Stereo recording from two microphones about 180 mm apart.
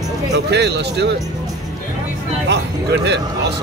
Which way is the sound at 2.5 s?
70° right (ahead or behind).